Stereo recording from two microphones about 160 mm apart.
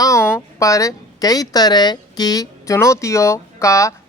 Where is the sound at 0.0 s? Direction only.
20° left (ahead or behind).